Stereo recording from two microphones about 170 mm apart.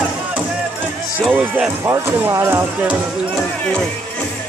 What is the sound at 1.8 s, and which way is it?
Speech, 15° right (ahead or behind).